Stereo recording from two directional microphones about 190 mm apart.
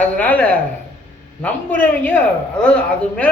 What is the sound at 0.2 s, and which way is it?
A woman's voice, 10° left (ahead or behind).